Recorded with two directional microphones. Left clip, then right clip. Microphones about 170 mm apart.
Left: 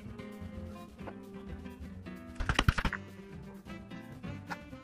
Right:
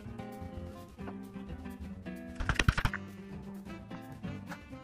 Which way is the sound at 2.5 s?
40° left (ahead or behind).